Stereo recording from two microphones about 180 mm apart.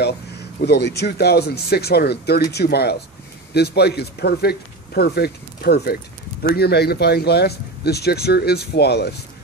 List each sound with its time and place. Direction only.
0.6 s speech: 65° left (ahead or behind)